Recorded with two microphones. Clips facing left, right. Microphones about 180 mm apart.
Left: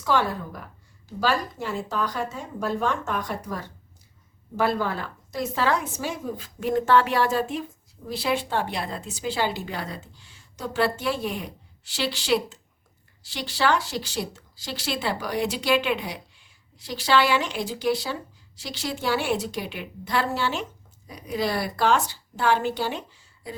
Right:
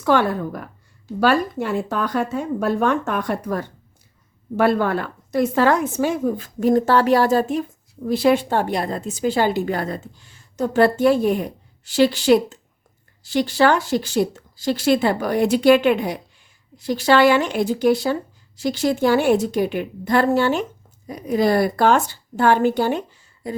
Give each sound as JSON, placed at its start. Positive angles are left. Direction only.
{"t": 0.0, "sound": "speech", "side_deg": -60}